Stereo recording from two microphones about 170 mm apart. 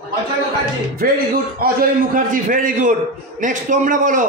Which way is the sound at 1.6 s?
55° right (ahead or behind).